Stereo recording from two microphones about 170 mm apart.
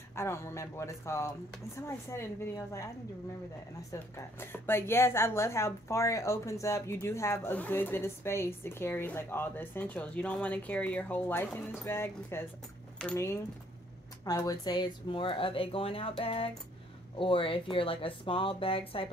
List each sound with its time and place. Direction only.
0.1 s a woman's voice: 15° left (ahead or behind)
3.9 s a woman's voice: 15° left (ahead or behind); by 19.0 s 35° left (ahead or behind)